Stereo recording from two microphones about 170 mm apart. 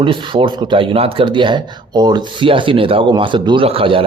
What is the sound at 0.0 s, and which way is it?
A man's voice, 30° right (ahead or behind).